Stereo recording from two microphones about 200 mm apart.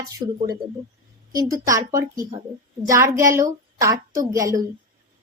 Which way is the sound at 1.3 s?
15° right (ahead or behind).